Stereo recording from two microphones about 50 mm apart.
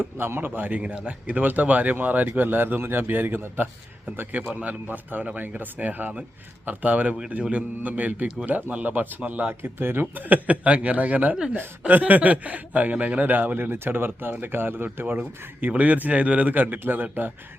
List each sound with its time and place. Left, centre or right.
0.2 s speech: right
0.8 s speech: right
9.6 s speech: right
10.2 s speech: right
13.7 s speech: right
14.9 s speech: right